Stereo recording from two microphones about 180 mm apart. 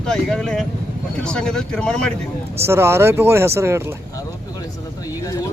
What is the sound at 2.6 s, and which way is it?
Speech, 15° right (ahead or behind).